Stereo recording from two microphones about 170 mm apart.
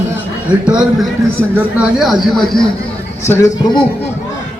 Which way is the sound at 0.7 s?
5° right (ahead or behind).